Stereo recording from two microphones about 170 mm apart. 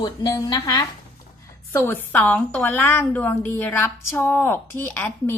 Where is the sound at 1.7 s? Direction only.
10° left (ahead or behind).